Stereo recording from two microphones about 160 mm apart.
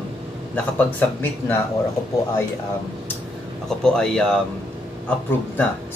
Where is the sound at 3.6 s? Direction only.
5° left (ahead or behind).